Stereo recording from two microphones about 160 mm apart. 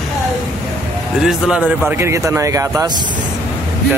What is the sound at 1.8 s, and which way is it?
Speech, 15° right (ahead or behind).